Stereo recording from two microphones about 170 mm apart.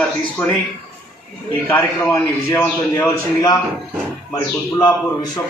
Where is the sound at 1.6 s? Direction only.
15° left (ahead or behind).